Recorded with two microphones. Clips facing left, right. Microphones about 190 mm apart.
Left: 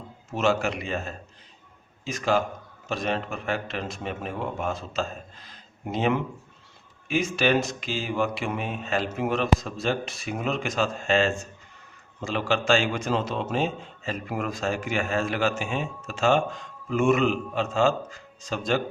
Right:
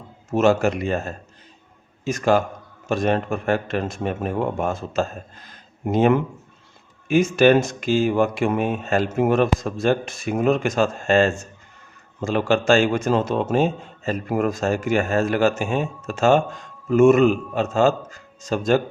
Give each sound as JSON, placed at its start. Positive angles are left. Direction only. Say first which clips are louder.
{"t": 0.3, "sound": "a man's voice", "louder": "right 7 dB", "side_deg": -45}